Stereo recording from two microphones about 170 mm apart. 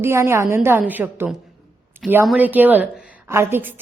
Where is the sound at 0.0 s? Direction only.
15° right (ahead or behind).